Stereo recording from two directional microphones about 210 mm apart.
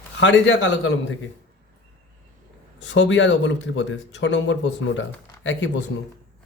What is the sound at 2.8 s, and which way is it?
Speech, 60° left (ahead or behind).